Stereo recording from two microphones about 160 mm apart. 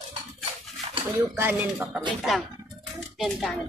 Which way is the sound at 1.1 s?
15° right (ahead or behind).